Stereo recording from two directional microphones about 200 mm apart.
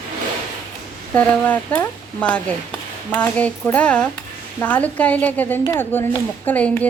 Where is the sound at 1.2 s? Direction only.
5° left (ahead or behind).